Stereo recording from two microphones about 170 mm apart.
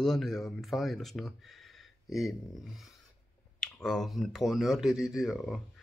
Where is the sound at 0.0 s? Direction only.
Centre (ahead or behind).